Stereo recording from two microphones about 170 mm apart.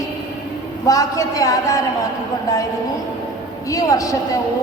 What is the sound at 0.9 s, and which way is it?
Speech, 20° left (ahead or behind).